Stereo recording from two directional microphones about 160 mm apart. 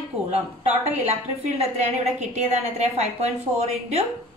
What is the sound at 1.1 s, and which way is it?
A woman's voice, 45° right (ahead or behind).